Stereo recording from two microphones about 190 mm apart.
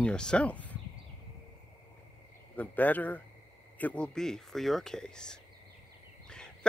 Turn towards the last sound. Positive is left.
turn(degrees=5)  # may be behind; listen again after turning